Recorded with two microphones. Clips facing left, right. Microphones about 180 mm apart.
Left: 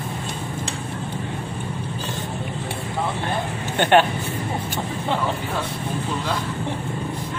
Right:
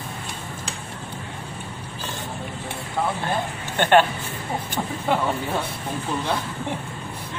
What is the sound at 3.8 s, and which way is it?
Speech, 15° left (ahead or behind).